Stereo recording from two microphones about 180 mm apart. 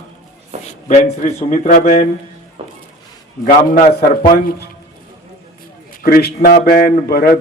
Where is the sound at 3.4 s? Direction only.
50° left (ahead or behind).